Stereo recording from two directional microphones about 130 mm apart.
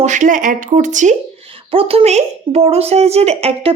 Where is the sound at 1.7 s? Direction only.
45° right (ahead or behind).